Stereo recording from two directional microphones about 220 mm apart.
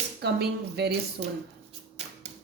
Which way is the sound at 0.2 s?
45° right (ahead or behind).